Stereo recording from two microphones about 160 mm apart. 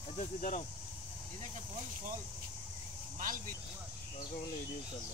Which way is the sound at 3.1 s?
60° right (ahead or behind).